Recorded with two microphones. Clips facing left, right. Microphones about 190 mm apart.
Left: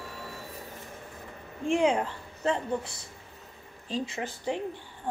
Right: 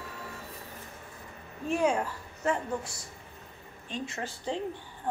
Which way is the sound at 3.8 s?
35° left (ahead or behind).